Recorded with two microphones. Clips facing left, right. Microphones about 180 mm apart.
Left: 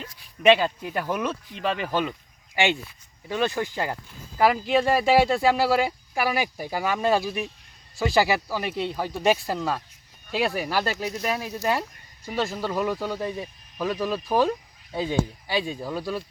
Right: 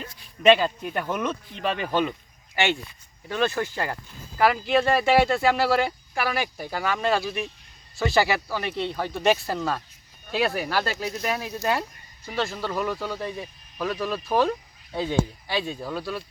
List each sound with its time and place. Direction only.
0.4 s speech: 10° left (ahead or behind)
12.2 s speech: 15° left (ahead or behind)